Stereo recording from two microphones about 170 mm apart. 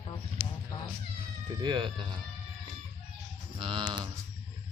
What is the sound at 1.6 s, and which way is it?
Speech, 25° right (ahead or behind).